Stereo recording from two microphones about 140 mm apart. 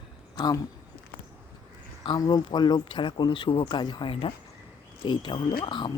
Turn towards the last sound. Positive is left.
turn(degrees=35)  # may be behind; listen again after turning